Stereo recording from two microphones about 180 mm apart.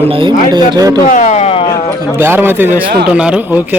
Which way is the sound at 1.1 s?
40° left (ahead or behind).